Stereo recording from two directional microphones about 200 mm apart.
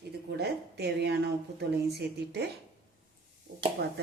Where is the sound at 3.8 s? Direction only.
55° right (ahead or behind).